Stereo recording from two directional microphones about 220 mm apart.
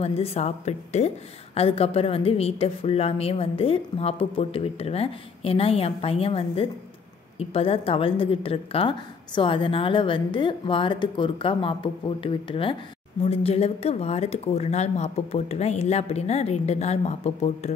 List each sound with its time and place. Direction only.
0.0 s a woman's voice: 30° left (ahead or behind)